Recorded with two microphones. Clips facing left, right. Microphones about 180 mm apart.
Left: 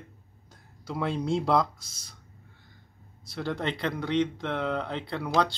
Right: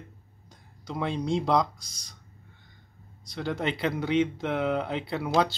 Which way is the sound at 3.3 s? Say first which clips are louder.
Right 1 dB; centre (ahead or behind).